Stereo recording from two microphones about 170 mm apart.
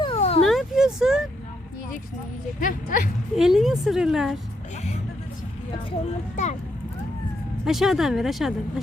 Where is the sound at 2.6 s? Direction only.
50° left (ahead or behind).